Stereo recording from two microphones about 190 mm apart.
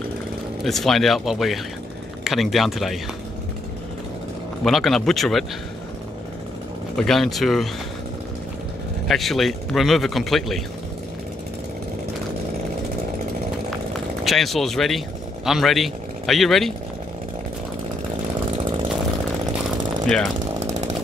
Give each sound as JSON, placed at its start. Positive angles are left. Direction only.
{"t": 0.7, "sound": "a man's voice", "side_deg": 0}
{"t": 4.6, "sound": "a man's voice", "side_deg": 0}
{"t": 7.0, "sound": "a man's voice", "side_deg": 0}
{"t": 9.0, "sound": "a man's voice", "side_deg": 0}
{"t": 14.2, "sound": "speech", "side_deg": 0}
{"t": 18.6, "sound": "chainsaw", "side_deg": -25}
{"t": 20.1, "sound": "a man's voice", "side_deg": 5}
{"t": 20.3, "sound": "chainsaw", "side_deg": -40}